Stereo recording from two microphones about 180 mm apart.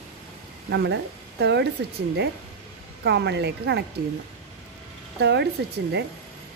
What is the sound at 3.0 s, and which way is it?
Speech, 75° right (ahead or behind).